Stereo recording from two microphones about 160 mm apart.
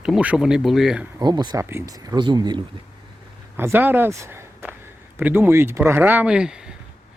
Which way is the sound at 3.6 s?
15° right (ahead or behind).